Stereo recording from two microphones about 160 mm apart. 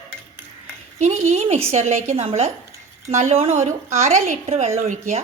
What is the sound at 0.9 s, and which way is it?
A woman's voice, 45° right (ahead or behind).